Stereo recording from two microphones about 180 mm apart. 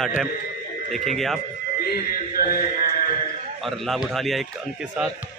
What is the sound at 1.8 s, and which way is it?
Music, 55° left (ahead or behind).